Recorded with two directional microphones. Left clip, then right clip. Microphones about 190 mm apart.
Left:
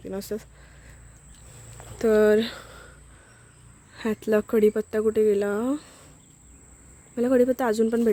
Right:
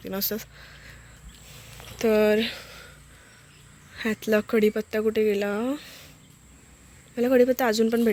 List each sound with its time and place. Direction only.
0.0 s speech: 15° left (ahead or behind)
2.0 s speech: 25° left (ahead or behind)
3.9 s speech: 25° left (ahead or behind)
7.2 s speech: 25° left (ahead or behind)